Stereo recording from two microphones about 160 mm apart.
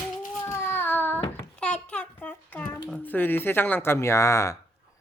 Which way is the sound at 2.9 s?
10° left (ahead or behind).